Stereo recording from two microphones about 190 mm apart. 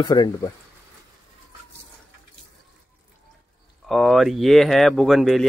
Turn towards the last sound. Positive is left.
turn(degrees=0)  # may be behind; listen again after turning